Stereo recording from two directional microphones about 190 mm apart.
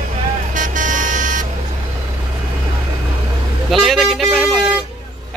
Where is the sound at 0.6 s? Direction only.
40° right (ahead or behind).